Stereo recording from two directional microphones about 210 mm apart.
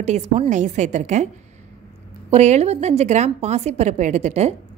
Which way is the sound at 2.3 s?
30° right (ahead or behind).